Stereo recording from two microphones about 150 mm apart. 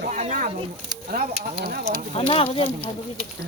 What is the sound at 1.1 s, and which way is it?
Speech, 80° right.